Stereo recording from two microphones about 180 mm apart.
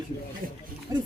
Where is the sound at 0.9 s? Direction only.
20° right (ahead or behind).